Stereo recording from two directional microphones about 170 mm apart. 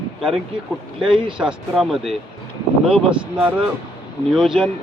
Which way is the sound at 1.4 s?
5° right (ahead or behind).